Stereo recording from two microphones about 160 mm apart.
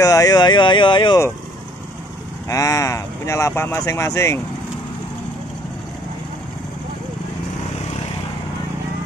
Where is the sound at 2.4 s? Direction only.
20° left (ahead or behind).